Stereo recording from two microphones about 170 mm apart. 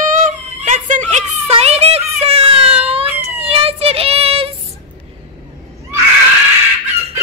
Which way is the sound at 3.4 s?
35° right (ahead or behind).